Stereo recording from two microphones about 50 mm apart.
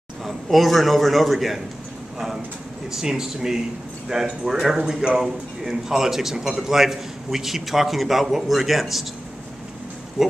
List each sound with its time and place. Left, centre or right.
0.2 s a man's voice: centre
2.9 s a man's voice: centre